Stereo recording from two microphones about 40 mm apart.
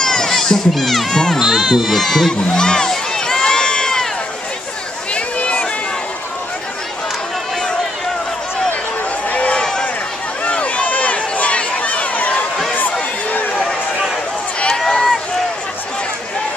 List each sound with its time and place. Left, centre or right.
0.0 s a sound: centre
0.3 s speech: centre
1.4 s speech: centre
2.5 s run: centre
5.1 s a sound: left
9.3 s a sound: left
9.6 s run: centre
10.5 s run: left
14.7 s run: centre